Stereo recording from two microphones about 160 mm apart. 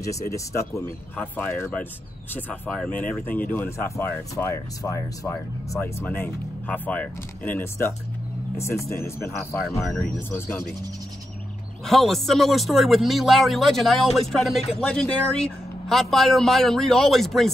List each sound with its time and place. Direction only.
0.5 s speech: 20° left (ahead or behind)
11.8 s speech: centre (ahead or behind)